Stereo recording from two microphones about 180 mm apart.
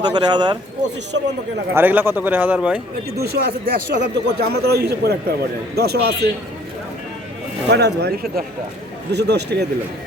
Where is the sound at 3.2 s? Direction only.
60° right (ahead or behind).